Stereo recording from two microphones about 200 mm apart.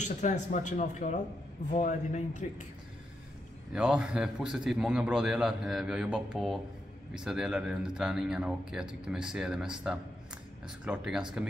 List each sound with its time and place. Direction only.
0.0 s speech: 35° left (ahead or behind)
3.7 s a man's voice: 5° right (ahead or behind)